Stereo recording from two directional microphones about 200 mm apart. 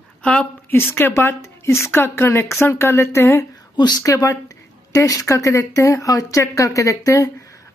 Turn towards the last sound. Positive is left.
turn(degrees=15)  # may be behind; listen again after turning